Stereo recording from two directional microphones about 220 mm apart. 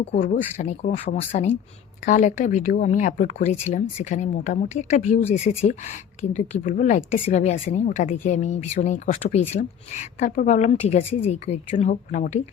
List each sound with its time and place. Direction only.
0.0 s speech: 30° left (ahead or behind)